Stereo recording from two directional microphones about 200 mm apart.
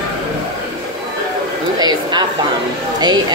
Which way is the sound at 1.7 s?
20° right (ahead or behind).